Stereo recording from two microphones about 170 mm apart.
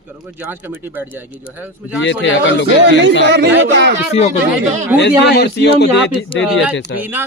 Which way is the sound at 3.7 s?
75° right (ahead or behind).